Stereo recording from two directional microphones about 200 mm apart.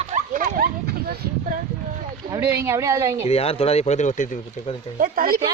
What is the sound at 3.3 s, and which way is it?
Speech, 30° left (ahead or behind).